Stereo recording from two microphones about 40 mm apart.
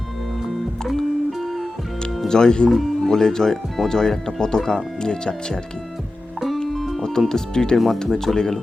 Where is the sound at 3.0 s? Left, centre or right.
Centre.